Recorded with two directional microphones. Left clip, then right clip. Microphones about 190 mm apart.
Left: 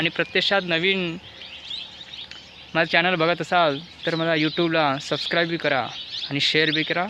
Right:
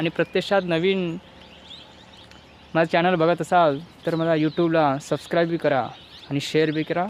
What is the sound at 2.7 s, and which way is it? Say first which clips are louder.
Speech: even; centre (ahead or behind).